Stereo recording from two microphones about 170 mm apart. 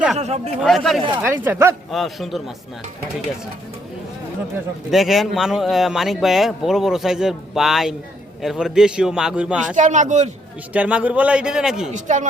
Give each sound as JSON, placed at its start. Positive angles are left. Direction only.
{"t": 0.2, "sound": "speech", "side_deg": -40}
{"t": 0.6, "sound": "speech", "side_deg": 0}
{"t": 1.2, "sound": "a man's voice", "side_deg": -10}
{"t": 1.9, "sound": "speech", "side_deg": 0}
{"t": 4.9, "sound": "speech", "side_deg": 0}
{"t": 9.7, "sound": "speech", "side_deg": -45}
{"t": 10.8, "sound": "a man's voice", "side_deg": -5}
{"t": 11.9, "sound": "speech", "side_deg": -45}